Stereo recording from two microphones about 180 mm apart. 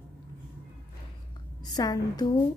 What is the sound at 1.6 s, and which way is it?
Speech, 20° left (ahead or behind).